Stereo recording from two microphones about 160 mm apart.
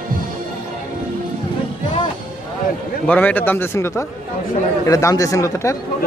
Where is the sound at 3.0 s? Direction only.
10° left (ahead or behind).